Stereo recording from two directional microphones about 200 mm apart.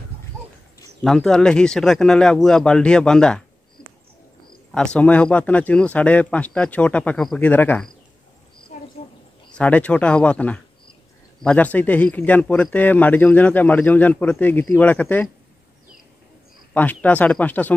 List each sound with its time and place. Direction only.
1.0 s speech: 5° left (ahead or behind)
4.7 s a man's voice: 5° left (ahead or behind)
9.5 s a man's voice: 5° left (ahead or behind)
16.7 s a man's voice: 10° left (ahead or behind)